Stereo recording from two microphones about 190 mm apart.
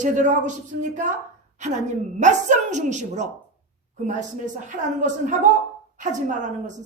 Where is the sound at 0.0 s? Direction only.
40° right (ahead or behind).